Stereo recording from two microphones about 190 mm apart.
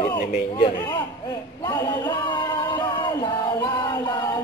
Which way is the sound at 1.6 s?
20° left (ahead or behind).